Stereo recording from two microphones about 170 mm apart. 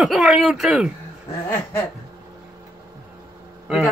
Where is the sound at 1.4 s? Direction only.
15° left (ahead or behind).